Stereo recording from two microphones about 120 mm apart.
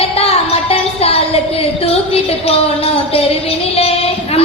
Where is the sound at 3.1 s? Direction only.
55° left (ahead or behind).